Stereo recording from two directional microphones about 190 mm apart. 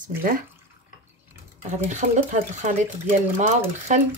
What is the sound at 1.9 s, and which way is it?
Speech, 40° right (ahead or behind).